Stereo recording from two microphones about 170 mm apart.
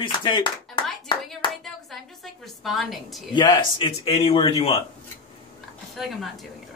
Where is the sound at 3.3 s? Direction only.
25° left (ahead or behind).